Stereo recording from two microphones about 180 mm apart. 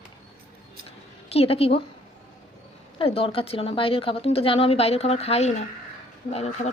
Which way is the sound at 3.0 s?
30° left (ahead or behind).